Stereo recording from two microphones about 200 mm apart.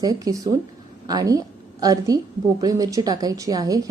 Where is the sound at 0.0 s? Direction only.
20° right (ahead or behind).